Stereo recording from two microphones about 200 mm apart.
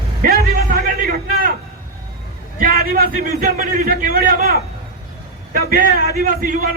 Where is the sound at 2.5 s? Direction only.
45° right (ahead or behind).